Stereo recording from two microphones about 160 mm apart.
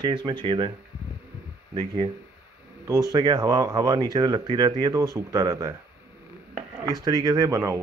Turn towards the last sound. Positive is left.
turn(degrees=-20)  # may be behind; listen again after turning